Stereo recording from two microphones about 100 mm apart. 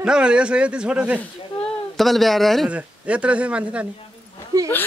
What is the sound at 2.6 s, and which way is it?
Speech, 10° right (ahead or behind).